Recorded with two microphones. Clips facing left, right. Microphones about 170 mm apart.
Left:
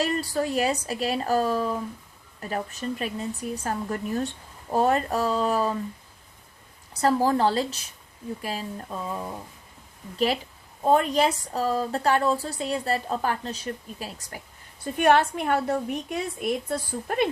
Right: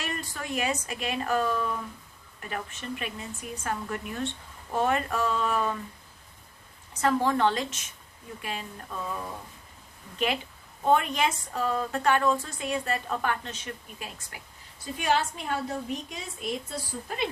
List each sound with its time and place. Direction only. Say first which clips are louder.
0.0 s a woman's voice: left 10 dB; 35° left (ahead or behind)
6.9 s a woman's voice: left 3 dB; 35° left (ahead or behind)
10.8 s a woman's voice: left 3 dB; 35° left (ahead or behind)
14.9 s a woman's voice: left 7 dB; 60° left (ahead or behind)